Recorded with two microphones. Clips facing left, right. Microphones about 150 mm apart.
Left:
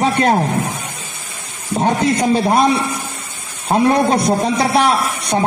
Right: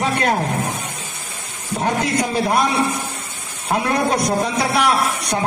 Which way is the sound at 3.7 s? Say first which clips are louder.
Left 5 dB; 30° left (ahead or behind).